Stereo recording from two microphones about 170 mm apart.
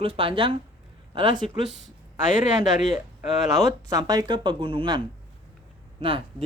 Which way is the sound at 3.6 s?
20° right (ahead or behind).